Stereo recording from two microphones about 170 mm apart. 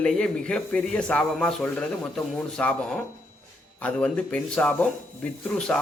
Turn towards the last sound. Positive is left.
turn(degrees=5)  # may be behind; listen again after turning